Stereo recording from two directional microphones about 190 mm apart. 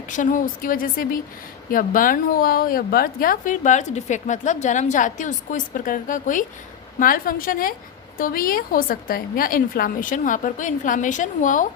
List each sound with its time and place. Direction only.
0.1 s a woman's voice: 45° left (ahead or behind)